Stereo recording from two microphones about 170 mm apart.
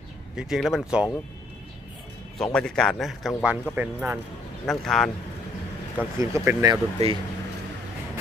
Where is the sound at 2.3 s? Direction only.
5° left (ahead or behind).